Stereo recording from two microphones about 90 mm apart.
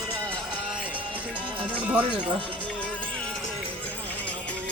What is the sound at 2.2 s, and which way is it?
Speech, 60° right (ahead or behind).